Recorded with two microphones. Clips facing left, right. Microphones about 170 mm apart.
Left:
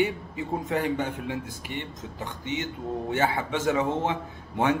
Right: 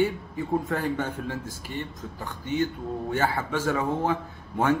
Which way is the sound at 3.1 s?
20° left (ahead or behind).